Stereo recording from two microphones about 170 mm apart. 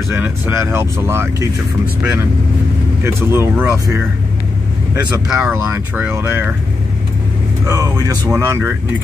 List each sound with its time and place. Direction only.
0.1 s speech: 15° right (ahead or behind)
3.0 s speech: 15° right (ahead or behind)
4.9 s speech: 5° right (ahead or behind)
5.7 s speech: 15° right (ahead or behind)
7.6 s speech: 20° right (ahead or behind)